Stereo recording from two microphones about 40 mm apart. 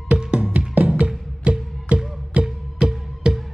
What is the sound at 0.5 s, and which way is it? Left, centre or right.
Music, right.